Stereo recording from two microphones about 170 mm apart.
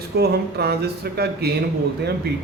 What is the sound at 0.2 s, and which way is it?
Speech, 70° right (ahead or behind).